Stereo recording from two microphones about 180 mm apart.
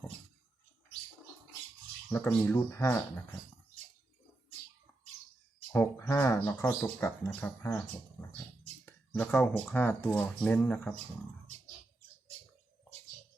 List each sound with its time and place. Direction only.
2.0 s speech: 10° left (ahead or behind)
5.7 s speech: 15° left (ahead or behind)